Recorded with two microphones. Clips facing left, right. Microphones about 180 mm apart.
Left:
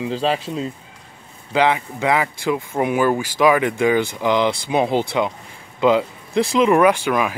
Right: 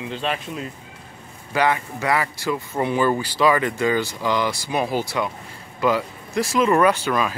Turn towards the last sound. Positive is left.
turn(degrees=15)  # may be behind; listen again after turning